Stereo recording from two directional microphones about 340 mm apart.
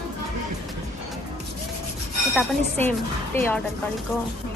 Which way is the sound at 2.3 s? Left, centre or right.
Centre.